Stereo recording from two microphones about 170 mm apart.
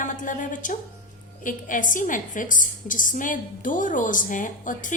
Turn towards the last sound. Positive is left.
turn(degrees=50)  # may be behind; listen again after turning